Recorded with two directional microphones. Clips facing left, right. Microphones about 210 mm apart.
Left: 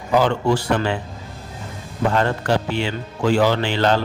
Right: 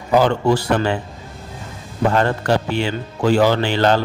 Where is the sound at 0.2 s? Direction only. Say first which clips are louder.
Right 2 dB; 40° right (ahead or behind).